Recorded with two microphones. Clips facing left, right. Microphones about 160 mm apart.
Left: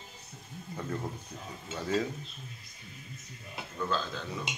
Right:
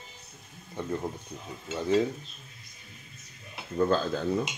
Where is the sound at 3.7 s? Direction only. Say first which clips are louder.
Right 8 dB; 45° right (ahead or behind).